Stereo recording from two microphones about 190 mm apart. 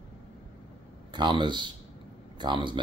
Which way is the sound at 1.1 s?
25° right (ahead or behind).